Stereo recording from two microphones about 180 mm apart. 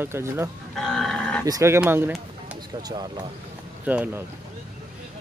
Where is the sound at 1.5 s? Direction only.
15° right (ahead or behind).